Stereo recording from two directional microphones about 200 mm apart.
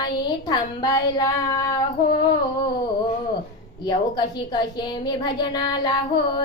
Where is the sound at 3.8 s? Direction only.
20° left (ahead or behind).